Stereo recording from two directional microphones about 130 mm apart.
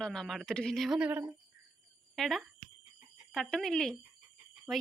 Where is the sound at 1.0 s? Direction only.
10° right (ahead or behind).